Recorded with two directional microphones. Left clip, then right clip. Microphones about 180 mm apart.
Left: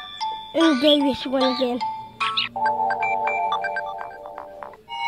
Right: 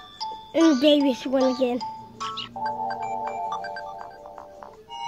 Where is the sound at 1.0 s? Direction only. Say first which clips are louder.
Left 1 dB; centre (ahead or behind).